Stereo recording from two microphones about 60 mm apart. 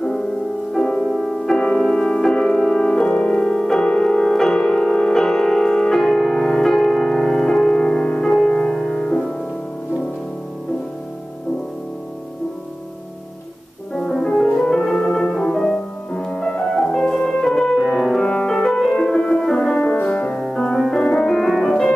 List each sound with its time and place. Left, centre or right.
0.7 s music: centre
1.0 s music: centre
13.9 s music: centre
19.8 s music: left
20.5 s music: centre